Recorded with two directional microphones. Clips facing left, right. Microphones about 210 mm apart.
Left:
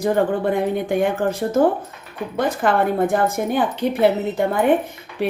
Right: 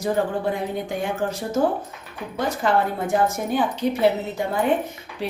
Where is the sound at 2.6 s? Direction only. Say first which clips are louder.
Left 4 dB; 55° left (ahead or behind).